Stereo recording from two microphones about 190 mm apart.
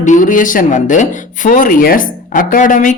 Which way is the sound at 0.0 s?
40° left (ahead or behind).